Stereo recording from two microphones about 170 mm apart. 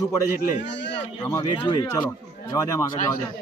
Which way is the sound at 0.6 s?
90° left.